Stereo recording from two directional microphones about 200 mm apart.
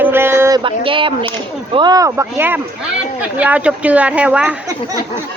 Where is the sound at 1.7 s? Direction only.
20° right (ahead or behind).